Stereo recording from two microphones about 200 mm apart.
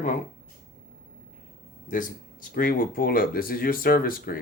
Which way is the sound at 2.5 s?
45° left (ahead or behind).